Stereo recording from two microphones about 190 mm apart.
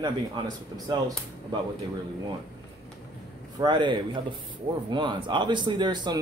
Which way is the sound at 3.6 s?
25° right (ahead or behind).